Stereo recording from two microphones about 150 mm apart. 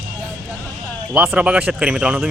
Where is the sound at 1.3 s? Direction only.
10° right (ahead or behind).